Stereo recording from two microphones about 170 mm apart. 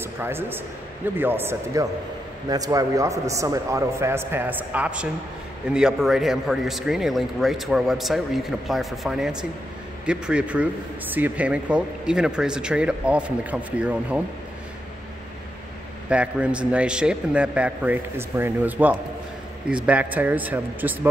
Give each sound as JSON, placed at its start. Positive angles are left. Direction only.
{"t": 0.0, "sound": "a man's voice", "side_deg": -15}
{"t": 16.1, "sound": "speech", "side_deg": -5}